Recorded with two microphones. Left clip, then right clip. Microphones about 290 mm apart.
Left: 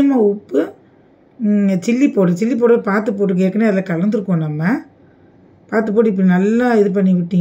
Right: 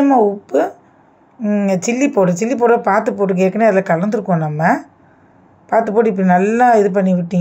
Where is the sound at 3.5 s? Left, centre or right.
Right.